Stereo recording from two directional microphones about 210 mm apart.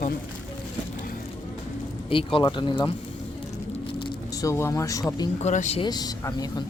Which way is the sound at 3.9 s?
20° left (ahead or behind).